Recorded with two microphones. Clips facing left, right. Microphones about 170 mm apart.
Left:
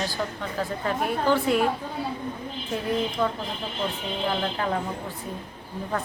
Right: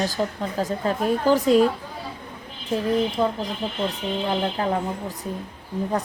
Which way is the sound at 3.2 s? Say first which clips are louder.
Right 1 dB; 25° right (ahead or behind).